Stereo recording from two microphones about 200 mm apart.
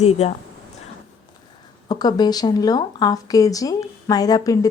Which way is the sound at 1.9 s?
20° left (ahead or behind).